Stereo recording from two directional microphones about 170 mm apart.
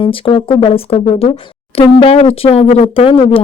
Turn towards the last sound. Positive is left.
turn(degrees=30)  # may be behind; listen again after turning